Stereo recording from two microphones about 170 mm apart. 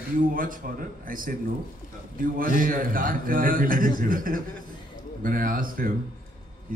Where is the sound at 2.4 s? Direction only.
55° right (ahead or behind).